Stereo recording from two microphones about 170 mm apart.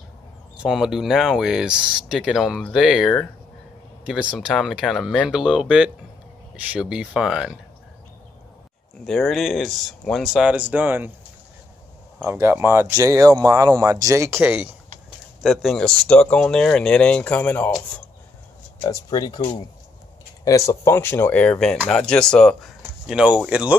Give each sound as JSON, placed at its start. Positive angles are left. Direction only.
{"t": 0.6, "sound": "speech", "side_deg": -5}
{"t": 9.0, "sound": "speech", "side_deg": 0}
{"t": 12.3, "sound": "speech", "side_deg": -15}
{"t": 14.4, "sound": "speech", "side_deg": -5}
{"t": 18.9, "sound": "speech", "side_deg": 25}
{"t": 20.4, "sound": "speech", "side_deg": 20}